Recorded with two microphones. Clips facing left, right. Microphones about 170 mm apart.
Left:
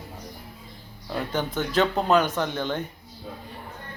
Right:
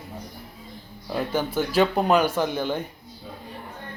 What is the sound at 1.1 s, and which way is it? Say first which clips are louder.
Speech: right 2 dB; 10° right (ahead or behind).